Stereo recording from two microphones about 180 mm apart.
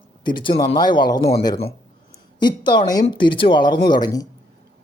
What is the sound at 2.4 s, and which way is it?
Speech, 25° left (ahead or behind).